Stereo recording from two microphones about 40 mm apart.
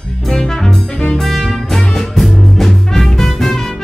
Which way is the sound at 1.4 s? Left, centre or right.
Centre.